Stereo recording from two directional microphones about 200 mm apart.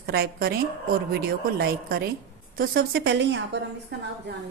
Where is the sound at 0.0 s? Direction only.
50° right (ahead or behind).